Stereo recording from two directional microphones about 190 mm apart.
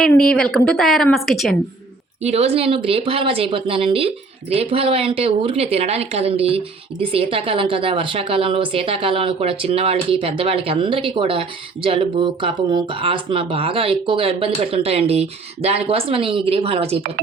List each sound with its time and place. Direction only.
0.2 s a woman's voice: 5° left (ahead or behind)
2.2 s speech: 35° right (ahead or behind)